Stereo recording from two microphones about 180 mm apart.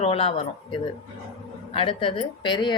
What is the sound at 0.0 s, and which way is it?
A woman's voice, 30° left (ahead or behind).